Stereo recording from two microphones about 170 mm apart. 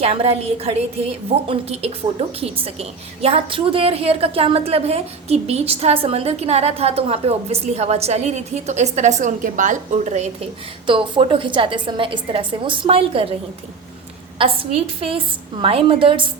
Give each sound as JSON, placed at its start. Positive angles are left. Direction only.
{"t": 0.0, "sound": "a woman's voice", "side_deg": -35}
{"t": 14.3, "sound": "a woman's voice", "side_deg": -30}